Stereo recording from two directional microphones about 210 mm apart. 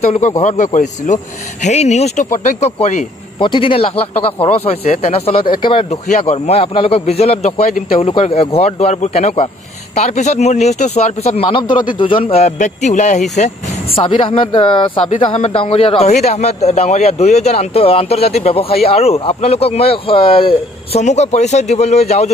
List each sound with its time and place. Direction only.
0.0 s speech: 35° left (ahead or behind)